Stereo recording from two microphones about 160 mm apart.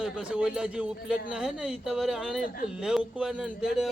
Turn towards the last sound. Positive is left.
turn(degrees=-5)  # may be behind; listen again after turning